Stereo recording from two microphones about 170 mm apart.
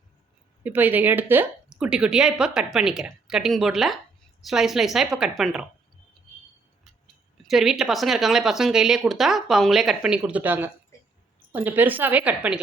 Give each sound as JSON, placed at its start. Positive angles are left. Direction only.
{"t": 0.6, "sound": "a woman's voice", "side_deg": -10}
{"t": 7.4, "sound": "a woman's voice", "side_deg": 0}